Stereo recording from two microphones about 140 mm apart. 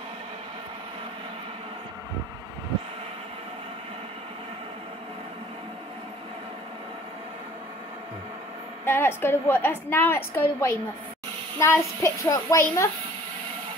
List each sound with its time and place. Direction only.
8.8 s a woman's voice: 15° left (ahead or behind)